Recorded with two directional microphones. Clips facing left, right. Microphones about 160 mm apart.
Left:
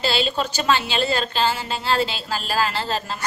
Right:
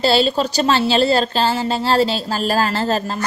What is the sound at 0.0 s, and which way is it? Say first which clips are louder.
A woman's voice: right 7 dB; 40° right (ahead or behind).